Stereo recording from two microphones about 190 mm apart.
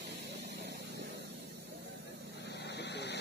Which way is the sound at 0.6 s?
65° right (ahead or behind).